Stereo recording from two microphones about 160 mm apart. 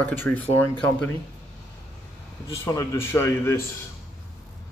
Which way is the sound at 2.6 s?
20° left (ahead or behind).